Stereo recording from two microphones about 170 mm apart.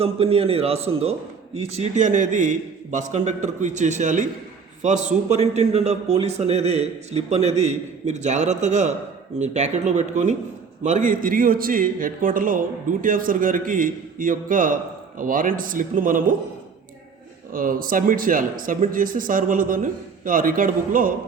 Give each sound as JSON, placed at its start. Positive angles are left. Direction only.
{"t": 0.0, "sound": "a man's voice", "side_deg": -35}
{"t": 17.5, "sound": "a man's voice", "side_deg": -55}